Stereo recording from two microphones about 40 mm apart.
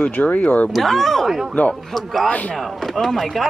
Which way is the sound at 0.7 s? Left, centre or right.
Centre.